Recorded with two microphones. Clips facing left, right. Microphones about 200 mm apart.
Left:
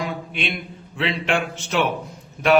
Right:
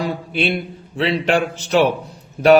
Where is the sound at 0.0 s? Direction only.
35° right (ahead or behind).